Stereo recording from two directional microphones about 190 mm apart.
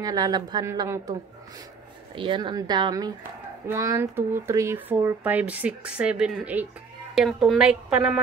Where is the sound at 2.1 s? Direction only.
25° right (ahead or behind).